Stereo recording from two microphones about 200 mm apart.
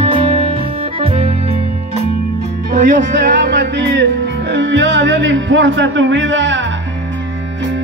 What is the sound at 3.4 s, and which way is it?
Music, 60° right (ahead or behind).